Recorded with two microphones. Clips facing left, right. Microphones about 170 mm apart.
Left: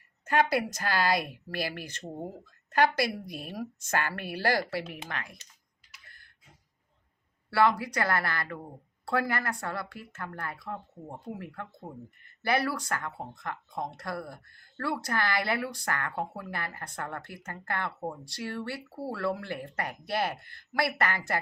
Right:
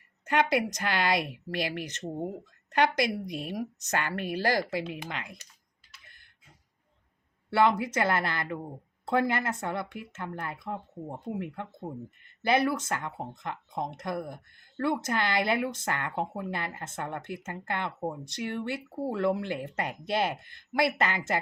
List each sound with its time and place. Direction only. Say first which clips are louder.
0.5 s speech: right 1 dB; 20° right (ahead or behind)
7.5 s speech: right 1 dB; 20° right (ahead or behind)